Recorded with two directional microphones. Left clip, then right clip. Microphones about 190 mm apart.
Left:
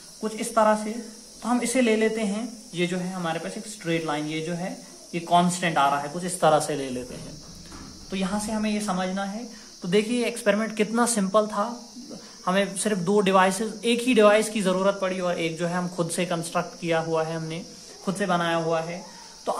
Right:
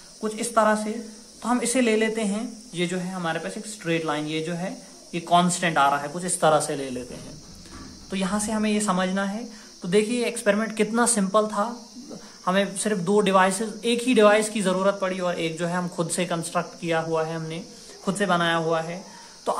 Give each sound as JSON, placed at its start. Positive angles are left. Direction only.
{"t": 0.2, "sound": "speech", "side_deg": -5}
{"t": 8.1, "sound": "speech", "side_deg": -10}
{"t": 9.8, "sound": "speech", "side_deg": 0}